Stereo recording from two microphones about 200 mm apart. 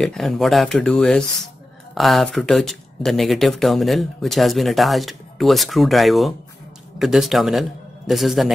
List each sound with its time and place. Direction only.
0.0 s speech: centre (ahead or behind)